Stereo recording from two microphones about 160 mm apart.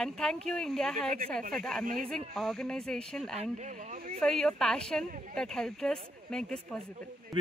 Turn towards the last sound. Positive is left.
turn(degrees=5)  # may be behind; listen again after turning